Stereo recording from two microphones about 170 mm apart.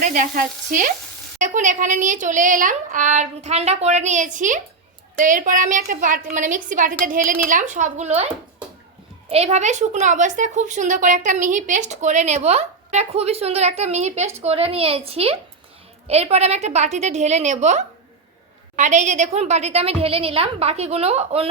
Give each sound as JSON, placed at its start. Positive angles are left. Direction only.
{"t": 0.0, "sound": "a woman's voice", "side_deg": -50}
{"t": 9.3, "sound": "a woman's voice", "side_deg": -40}